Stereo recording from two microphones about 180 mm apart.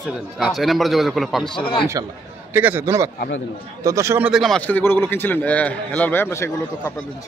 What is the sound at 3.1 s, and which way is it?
Speech, 65° left (ahead or behind).